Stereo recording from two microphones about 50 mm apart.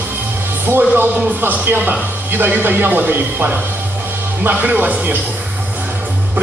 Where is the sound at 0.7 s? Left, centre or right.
Right.